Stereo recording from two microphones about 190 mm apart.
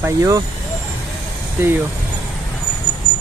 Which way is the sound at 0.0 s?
15° right (ahead or behind).